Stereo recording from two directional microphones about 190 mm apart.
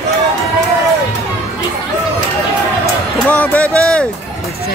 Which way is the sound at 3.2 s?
10° left (ahead or behind).